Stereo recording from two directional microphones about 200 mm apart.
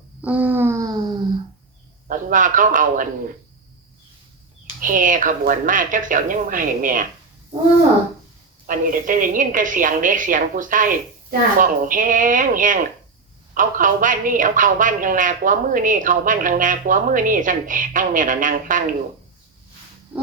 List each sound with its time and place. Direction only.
0.2 s a sound: 5° right (ahead or behind)
2.0 s a man's voice: 40° right (ahead or behind)
4.8 s a man's voice: 40° right (ahead or behind)
8.6 s a man's voice: 45° right (ahead or behind)